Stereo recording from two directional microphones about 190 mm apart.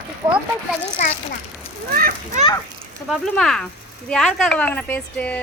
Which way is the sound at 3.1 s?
Centre (ahead or behind).